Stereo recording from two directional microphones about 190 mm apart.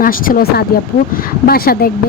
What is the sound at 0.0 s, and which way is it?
Speech, 50° left (ahead or behind).